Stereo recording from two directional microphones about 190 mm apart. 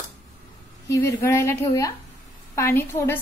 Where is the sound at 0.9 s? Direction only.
15° left (ahead or behind).